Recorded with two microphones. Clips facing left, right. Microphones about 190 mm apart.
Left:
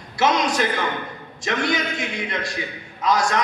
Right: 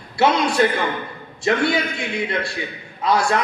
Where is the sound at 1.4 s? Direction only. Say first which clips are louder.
Right 4 dB; 30° right (ahead or behind).